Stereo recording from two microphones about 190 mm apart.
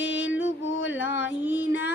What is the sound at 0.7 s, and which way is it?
Speech, 80° left.